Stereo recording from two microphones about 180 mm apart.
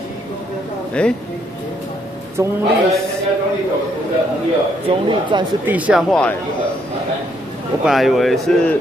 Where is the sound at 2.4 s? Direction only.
15° right (ahead or behind).